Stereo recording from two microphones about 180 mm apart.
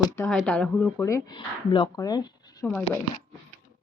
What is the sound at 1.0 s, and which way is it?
Speech, 20° left (ahead or behind).